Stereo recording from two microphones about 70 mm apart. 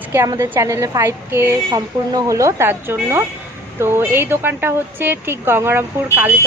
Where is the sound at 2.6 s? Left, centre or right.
Right.